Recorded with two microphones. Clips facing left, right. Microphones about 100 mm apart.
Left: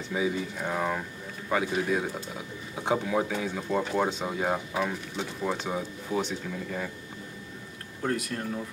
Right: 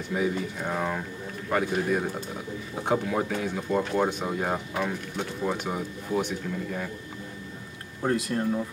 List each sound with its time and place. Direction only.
0.1 s speech: centre (ahead or behind)
8.0 s speech: 25° right (ahead or behind)